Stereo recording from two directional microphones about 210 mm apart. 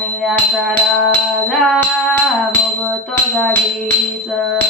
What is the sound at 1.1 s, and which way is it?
Music, 5° left (ahead or behind).